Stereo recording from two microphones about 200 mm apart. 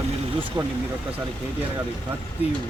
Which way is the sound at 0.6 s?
20° right (ahead or behind).